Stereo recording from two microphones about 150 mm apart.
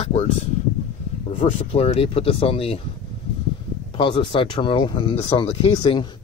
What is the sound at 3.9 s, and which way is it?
Speech, 35° left (ahead or behind).